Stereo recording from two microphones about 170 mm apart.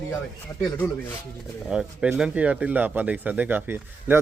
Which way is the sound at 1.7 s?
5° right (ahead or behind).